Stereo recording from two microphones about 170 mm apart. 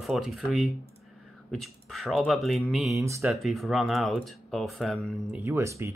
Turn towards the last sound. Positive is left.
turn(degrees=-15)  # may be behind; listen again after turning